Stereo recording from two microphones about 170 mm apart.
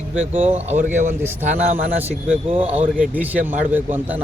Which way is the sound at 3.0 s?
10° right (ahead or behind).